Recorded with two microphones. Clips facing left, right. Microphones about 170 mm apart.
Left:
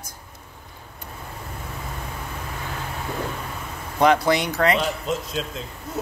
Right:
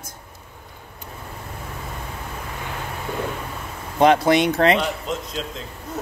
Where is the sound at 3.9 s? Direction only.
25° right (ahead or behind).